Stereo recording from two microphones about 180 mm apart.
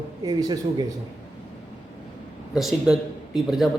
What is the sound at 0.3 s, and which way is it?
Speech, 20° right (ahead or behind).